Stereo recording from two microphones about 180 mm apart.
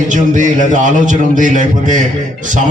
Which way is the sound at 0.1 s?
45° right (ahead or behind).